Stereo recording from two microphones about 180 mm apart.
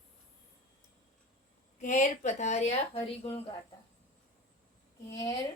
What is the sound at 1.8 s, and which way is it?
Speech, 45° left (ahead or behind).